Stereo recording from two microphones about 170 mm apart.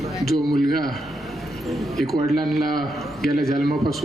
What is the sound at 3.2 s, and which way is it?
Speech, 65° left (ahead or behind).